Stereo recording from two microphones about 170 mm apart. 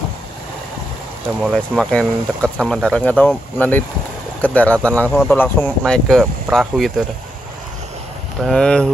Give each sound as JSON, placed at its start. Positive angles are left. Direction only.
{"t": 1.4, "sound": "speech", "side_deg": 0}
{"t": 8.4, "sound": "speech", "side_deg": 5}